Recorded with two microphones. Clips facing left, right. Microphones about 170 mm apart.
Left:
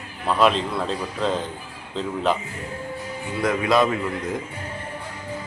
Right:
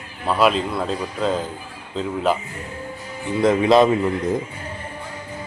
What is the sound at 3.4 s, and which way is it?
Speech, 25° right (ahead or behind).